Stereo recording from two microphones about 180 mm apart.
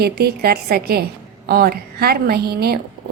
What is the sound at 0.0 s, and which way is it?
A woman's voice, 60° right (ahead or behind).